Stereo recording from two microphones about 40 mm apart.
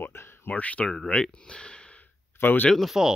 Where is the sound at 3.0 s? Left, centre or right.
Centre.